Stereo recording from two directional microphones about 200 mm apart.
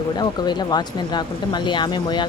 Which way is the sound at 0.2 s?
20° left (ahead or behind).